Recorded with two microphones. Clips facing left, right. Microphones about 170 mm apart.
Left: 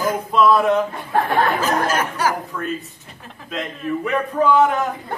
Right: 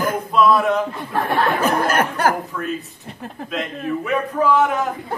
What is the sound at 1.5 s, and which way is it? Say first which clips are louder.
Speech: right 2 dB; 60° right (ahead or behind).